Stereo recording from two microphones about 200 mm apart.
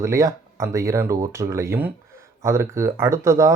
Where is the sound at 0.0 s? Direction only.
15° right (ahead or behind).